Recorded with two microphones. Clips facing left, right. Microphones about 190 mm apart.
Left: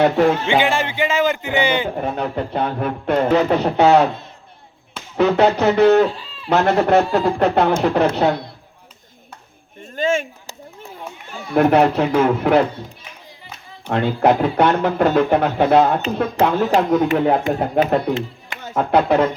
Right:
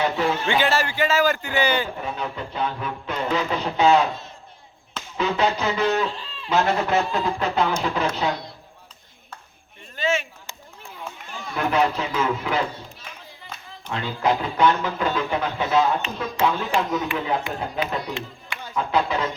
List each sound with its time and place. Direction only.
0.0 s speech: 60° left (ahead or behind)
0.6 s a man's voice: 20° left (ahead or behind)
2.0 s speech: 50° left (ahead or behind)
6.5 s speech: 60° left (ahead or behind)
9.8 s a sound: 45° left (ahead or behind)
11.5 s speech: 60° left (ahead or behind)
13.8 s speech: 60° left (ahead or behind)
16.5 s speech: 40° left (ahead or behind)
18.8 s speech: 60° left (ahead or behind)